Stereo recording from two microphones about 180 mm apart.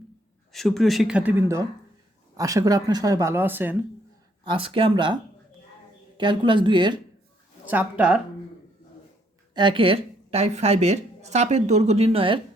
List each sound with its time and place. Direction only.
0.5 s speech: centre (ahead or behind)
4.4 s speech: 30° right (ahead or behind)
6.1 s speech: 25° right (ahead or behind)
7.6 s speech: 10° right (ahead or behind)
9.6 s a woman's voice: 25° right (ahead or behind)